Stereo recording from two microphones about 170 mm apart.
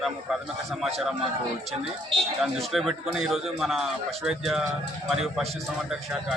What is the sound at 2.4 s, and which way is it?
A man's voice, centre (ahead or behind).